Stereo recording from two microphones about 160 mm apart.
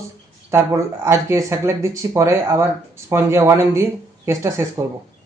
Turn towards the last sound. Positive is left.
turn(degrees=-20)  # may be behind; listen again after turning